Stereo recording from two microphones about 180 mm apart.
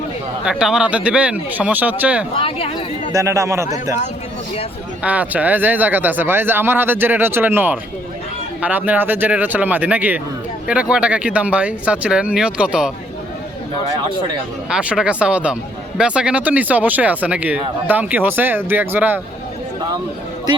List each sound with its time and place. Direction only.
0.4 s speech: 5° right (ahead or behind)
2.4 s speech: 35° left (ahead or behind)
3.1 s speech: 15° right (ahead or behind)
5.0 s speech: 10° right (ahead or behind)
14.7 s speech: 5° right (ahead or behind)